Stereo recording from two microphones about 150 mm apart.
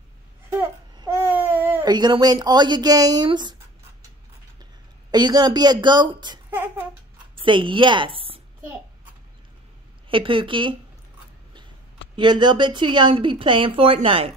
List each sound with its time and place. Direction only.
0.9 s babbling: 20° right (ahead or behind)
1.9 s speech: 30° right (ahead or behind)
5.1 s speech: 30° right (ahead or behind)
7.4 s a woman's voice: 35° right (ahead or behind)
10.0 s a woman's voice: 35° right (ahead or behind)
12.2 s a woman's voice: 30° right (ahead or behind)